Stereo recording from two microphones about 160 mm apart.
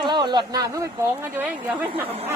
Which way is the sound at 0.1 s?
25° right (ahead or behind).